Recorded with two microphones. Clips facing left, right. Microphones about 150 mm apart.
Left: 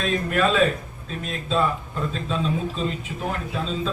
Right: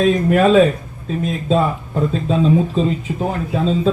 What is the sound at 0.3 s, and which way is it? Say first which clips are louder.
Speech: right 7 dB; 40° right (ahead or behind).